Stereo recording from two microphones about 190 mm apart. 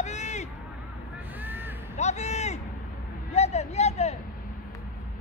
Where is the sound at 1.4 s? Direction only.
10° right (ahead or behind).